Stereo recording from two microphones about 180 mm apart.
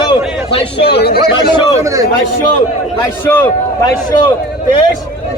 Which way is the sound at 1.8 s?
15° right (ahead or behind).